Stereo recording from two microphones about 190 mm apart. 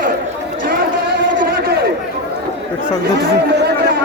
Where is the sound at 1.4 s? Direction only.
55° right (ahead or behind).